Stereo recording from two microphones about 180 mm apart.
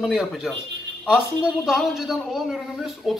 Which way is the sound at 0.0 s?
Centre (ahead or behind).